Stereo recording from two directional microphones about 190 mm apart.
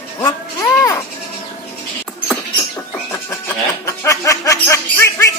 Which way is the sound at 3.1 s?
15° left (ahead or behind).